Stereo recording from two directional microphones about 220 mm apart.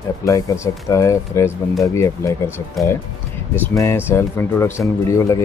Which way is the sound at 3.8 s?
10° left (ahead or behind).